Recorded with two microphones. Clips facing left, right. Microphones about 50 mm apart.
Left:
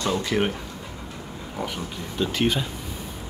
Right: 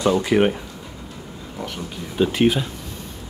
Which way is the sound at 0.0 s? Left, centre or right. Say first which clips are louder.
Right 6 dB; centre.